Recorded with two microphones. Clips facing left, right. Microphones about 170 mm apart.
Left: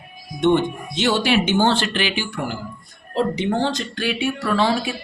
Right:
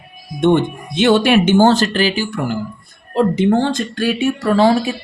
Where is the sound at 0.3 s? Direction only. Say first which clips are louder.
Right 3 dB; 50° right (ahead or behind).